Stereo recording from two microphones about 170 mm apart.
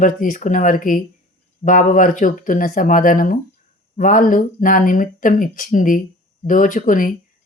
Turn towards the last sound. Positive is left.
turn(degrees=50)  # may be behind; listen again after turning